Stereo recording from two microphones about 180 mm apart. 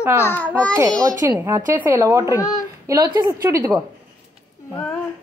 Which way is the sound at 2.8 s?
20° right (ahead or behind).